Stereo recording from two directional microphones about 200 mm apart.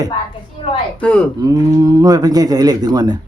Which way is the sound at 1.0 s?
5° left (ahead or behind).